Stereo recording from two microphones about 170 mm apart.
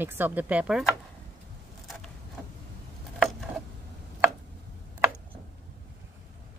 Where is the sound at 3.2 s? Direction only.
Centre (ahead or behind).